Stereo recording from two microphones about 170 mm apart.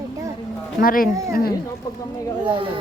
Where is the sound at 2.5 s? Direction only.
30° right (ahead or behind).